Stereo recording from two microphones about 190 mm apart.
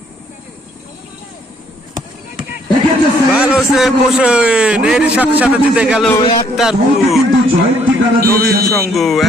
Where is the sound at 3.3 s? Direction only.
5° right (ahead or behind).